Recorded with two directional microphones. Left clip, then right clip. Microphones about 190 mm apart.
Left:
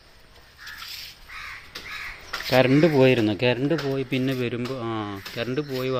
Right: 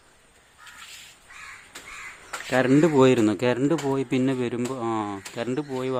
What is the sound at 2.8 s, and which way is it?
Speech, 20° right (ahead or behind).